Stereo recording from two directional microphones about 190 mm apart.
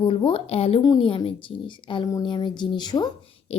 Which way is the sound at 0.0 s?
25° left (ahead or behind).